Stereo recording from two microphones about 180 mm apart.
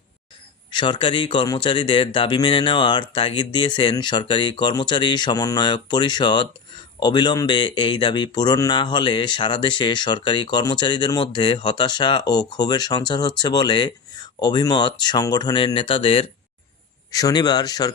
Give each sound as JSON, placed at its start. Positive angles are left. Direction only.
{"t": 0.7, "sound": "speech", "side_deg": 25}
{"t": 17.1, "sound": "speech", "side_deg": 20}